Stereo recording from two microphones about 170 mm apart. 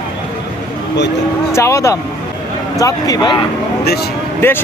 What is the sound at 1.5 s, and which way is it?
Speech, 15° left (ahead or behind).